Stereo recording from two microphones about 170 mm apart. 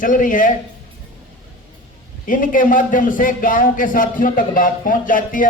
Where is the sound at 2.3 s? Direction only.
55° left (ahead or behind).